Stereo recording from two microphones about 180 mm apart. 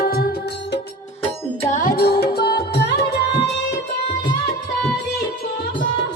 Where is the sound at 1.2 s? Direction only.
40° left (ahead or behind); by 3.1 s 65° left (ahead or behind).